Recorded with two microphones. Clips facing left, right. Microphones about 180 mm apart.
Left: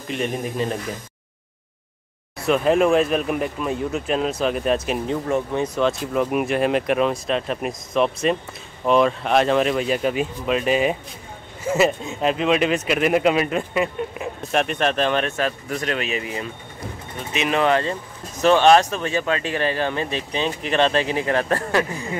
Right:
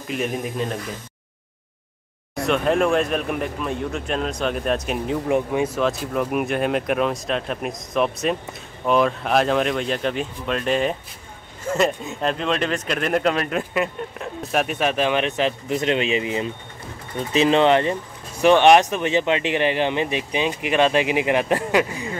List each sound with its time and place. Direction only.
0.1 s speech: centre (ahead or behind)
2.3 s speech: centre (ahead or behind)
5.3 s speech: 10° right (ahead or behind)